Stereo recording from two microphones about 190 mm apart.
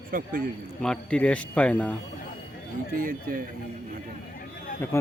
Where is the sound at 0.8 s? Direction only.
5° left (ahead or behind).